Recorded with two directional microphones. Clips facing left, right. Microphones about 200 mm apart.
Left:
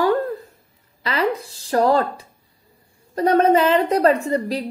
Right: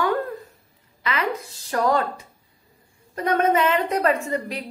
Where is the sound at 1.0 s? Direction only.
35° left (ahead or behind).